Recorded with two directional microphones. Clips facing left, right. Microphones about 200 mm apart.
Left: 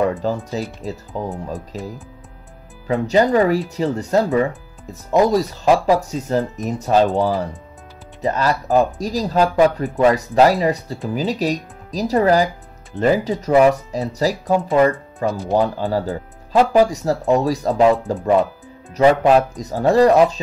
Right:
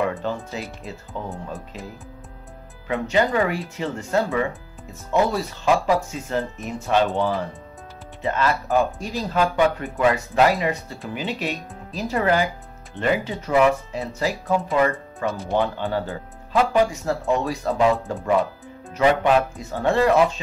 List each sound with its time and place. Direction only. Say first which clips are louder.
0.0 s speech: left 5 dB; 35° left (ahead or behind)
2.9 s speech: left 5 dB; 35° left (ahead or behind)
18.9 s speech: left 5 dB; 35° left (ahead or behind)